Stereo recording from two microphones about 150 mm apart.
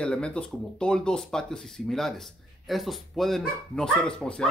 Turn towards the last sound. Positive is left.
turn(degrees=5)  # may be behind; listen again after turning